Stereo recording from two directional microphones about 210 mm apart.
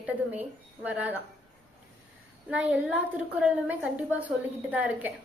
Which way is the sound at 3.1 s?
5° right (ahead or behind).